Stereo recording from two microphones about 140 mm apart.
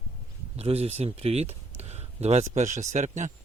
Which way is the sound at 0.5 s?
45° right (ahead or behind).